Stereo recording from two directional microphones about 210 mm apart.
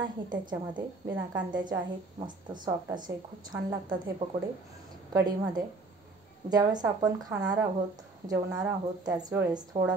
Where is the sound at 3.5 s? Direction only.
20° right (ahead or behind).